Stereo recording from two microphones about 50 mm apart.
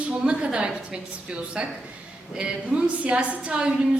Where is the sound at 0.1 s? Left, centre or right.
Right.